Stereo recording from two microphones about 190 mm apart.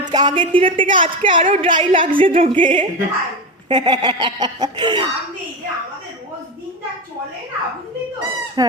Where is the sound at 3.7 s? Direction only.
25° right (ahead or behind).